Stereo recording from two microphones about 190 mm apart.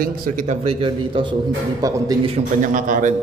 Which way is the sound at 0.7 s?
30° right (ahead or behind).